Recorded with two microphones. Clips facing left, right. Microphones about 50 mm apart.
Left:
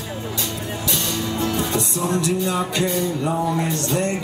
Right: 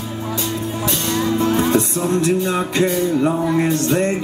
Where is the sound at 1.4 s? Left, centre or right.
Right.